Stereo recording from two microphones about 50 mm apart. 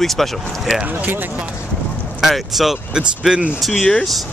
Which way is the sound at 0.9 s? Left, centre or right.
Right.